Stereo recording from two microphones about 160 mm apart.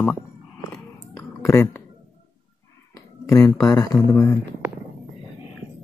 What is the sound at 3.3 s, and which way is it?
Speech, 20° left (ahead or behind).